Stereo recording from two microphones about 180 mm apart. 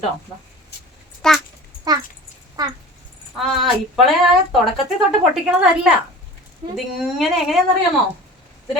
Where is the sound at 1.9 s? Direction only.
20° right (ahead or behind).